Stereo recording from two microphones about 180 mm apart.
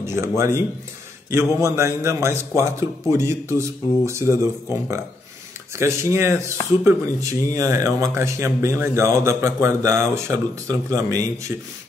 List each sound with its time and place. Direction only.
0.0 s speech: 15° right (ahead or behind)
5.8 s speech: 15° right (ahead or behind)